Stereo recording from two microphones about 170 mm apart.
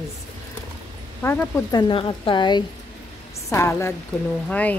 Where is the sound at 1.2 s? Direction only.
15° left (ahead or behind).